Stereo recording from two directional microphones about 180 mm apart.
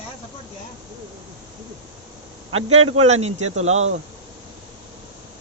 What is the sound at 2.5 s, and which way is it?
A man's voice, 35° right (ahead or behind).